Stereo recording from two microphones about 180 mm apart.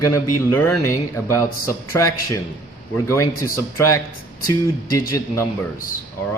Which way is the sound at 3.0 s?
15° left (ahead or behind).